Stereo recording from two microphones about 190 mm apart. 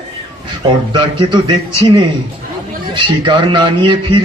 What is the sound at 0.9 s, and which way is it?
A man's voice, 25° right (ahead or behind).